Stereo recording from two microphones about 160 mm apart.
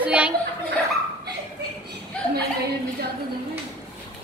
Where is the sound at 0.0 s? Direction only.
10° right (ahead or behind).